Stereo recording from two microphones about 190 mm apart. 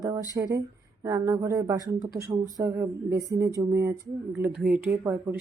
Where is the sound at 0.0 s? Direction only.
15° right (ahead or behind).